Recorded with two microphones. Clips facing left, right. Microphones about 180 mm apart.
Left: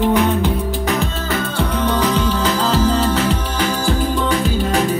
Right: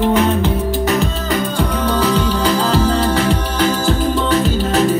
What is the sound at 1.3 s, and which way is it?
Music, 10° right (ahead or behind).